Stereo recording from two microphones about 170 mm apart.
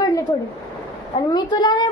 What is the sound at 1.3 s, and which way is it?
Speech, 25° left (ahead or behind).